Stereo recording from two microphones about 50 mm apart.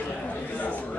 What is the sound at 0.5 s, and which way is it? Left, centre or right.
Speech, left.